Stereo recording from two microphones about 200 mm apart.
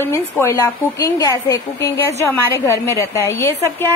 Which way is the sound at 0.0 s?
10° left (ahead or behind).